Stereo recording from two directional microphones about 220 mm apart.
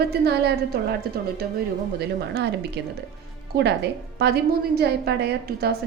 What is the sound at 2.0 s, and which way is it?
Speech, 50° right (ahead or behind).